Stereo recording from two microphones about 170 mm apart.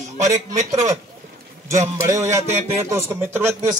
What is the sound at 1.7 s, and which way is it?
Speech, 15° right (ahead or behind).